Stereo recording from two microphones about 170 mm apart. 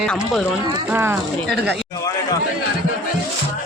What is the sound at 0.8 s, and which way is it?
Speech, 10° right (ahead or behind).